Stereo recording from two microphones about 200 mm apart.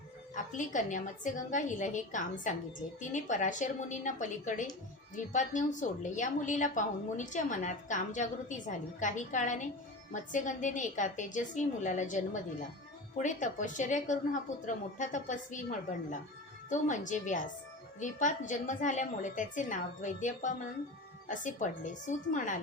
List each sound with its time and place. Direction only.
0.3 s a woman's voice: 40° left (ahead or behind)